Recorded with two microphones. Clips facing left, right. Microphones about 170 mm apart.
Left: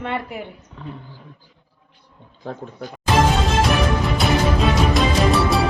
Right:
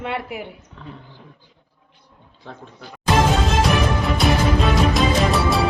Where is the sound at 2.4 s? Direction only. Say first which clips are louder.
Left 7 dB; 45° left (ahead or behind).